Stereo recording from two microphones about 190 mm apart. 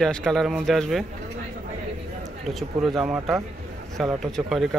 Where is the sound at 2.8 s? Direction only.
Centre (ahead or behind).